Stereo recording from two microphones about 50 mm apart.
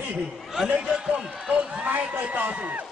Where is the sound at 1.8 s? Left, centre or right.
Right.